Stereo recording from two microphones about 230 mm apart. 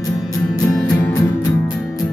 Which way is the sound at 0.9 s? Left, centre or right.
Centre.